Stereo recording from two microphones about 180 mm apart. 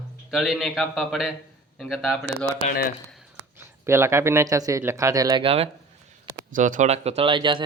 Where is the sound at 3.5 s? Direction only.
15° right (ahead or behind); by 5.6 s 30° right (ahead or behind).